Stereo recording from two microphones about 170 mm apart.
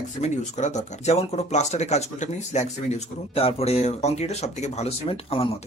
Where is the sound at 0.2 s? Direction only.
45° left (ahead or behind).